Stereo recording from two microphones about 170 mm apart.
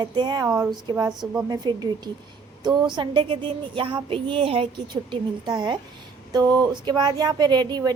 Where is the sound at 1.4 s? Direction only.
25° right (ahead or behind).